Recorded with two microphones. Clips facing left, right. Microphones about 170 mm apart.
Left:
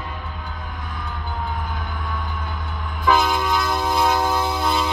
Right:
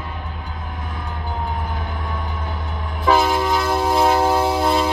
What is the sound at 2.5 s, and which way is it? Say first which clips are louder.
Train: right 2 dB; 25° right (ahead or behind).